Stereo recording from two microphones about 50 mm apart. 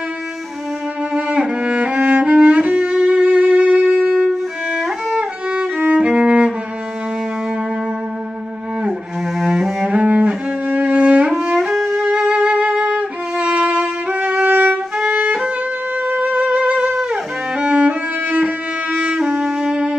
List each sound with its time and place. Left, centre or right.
1.6 s music: right
4.3 s music: centre
5.9 s music: right
9.4 s cello: centre
9.8 s cello: right
11.2 s music: centre
12.1 s music: right
15.0 s music: right
16.8 s music: centre